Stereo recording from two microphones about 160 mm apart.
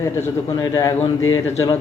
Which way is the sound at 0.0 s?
15° left (ahead or behind).